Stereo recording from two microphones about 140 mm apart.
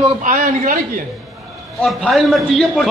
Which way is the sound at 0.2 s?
65° right (ahead or behind).